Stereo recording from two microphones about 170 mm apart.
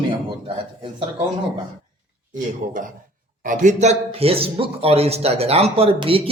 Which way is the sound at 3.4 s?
45° right (ahead or behind).